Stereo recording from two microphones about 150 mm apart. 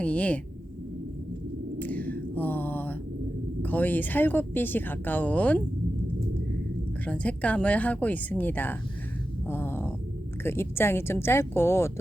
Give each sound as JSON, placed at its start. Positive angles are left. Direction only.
{"t": 0.0, "sound": "a woman's voice", "side_deg": 10}
{"t": 1.8, "sound": "a sound", "side_deg": 10}
{"t": 3.6, "sound": "a woman's voice", "side_deg": 10}
{"t": 7.0, "sound": "a woman's voice", "side_deg": 10}
{"t": 9.5, "sound": "a sound", "side_deg": 15}
{"t": 10.4, "sound": "a woman's voice", "side_deg": 15}